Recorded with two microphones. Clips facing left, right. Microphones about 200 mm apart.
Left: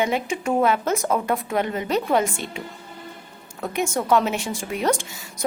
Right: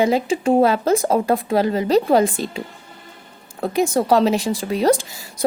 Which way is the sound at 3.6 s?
35° right (ahead or behind).